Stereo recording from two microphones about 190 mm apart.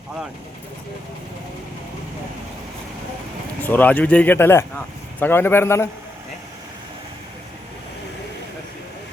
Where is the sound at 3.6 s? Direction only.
10° left (ahead or behind).